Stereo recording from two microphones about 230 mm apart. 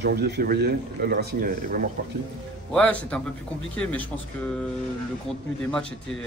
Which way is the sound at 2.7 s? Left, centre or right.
Centre.